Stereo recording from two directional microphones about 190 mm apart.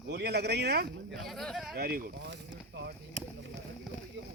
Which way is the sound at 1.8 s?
50° right (ahead or behind).